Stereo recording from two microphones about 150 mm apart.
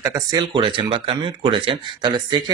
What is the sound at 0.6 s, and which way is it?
Speech, 35° right (ahead or behind).